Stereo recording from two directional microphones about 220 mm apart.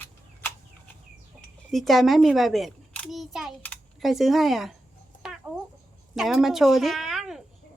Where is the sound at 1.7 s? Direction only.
Centre (ahead or behind).